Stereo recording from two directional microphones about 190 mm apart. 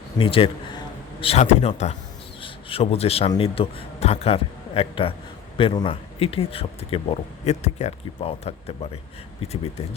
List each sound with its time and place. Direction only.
0.2 s a man's voice: 30° left (ahead or behind)